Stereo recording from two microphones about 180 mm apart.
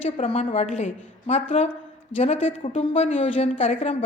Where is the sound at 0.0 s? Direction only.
35° left (ahead or behind).